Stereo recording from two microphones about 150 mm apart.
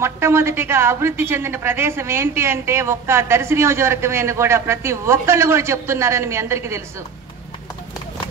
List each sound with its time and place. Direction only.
0.0 s a woman's voice: 15° right (ahead or behind)